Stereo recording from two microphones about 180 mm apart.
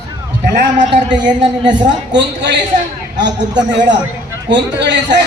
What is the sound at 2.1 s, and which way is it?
A woman's voice, 80° right.